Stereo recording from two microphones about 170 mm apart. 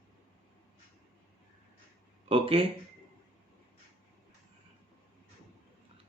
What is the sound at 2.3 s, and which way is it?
Speech, 30° right (ahead or behind).